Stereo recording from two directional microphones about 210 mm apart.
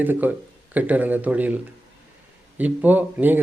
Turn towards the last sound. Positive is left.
turn(degrees=-10)  # may be behind; listen again after turning